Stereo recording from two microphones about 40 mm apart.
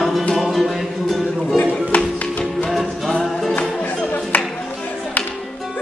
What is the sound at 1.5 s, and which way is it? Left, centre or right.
Music, left.